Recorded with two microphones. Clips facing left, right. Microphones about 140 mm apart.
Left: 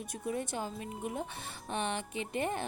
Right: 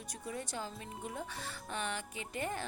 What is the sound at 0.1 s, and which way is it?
Speech, 20° left (ahead or behind).